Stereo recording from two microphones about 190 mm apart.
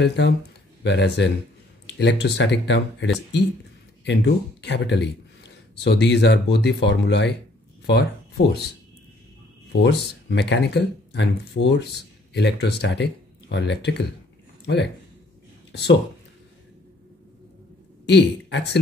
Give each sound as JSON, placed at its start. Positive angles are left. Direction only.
{"t": 0.0, "sound": "speech", "side_deg": 65}
{"t": 18.0, "sound": "speech", "side_deg": 65}